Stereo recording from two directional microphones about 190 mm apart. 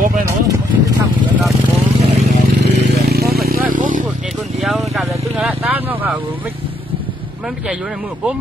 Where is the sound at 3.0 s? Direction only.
55° right (ahead or behind).